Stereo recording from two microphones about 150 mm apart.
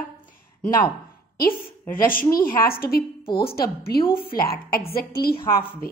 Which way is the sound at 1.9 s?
70° left (ahead or behind).